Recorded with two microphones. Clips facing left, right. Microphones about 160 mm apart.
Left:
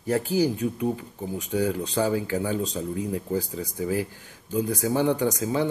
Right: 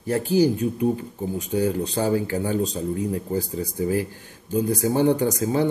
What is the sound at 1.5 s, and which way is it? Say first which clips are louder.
Speech: right 2 dB; 40° right (ahead or behind).